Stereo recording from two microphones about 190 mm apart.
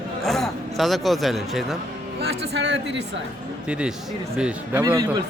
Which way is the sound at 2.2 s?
60° right (ahead or behind).